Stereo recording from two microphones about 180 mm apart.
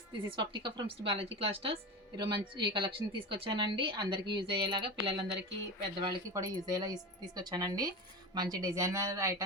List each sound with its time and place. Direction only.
0.3 s speech: 25° right (ahead or behind)